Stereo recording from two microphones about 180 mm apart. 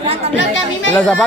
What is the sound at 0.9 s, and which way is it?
Speech, 5° left (ahead or behind).